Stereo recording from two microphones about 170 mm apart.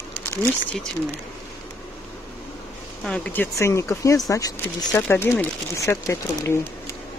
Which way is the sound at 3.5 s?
15° left (ahead or behind).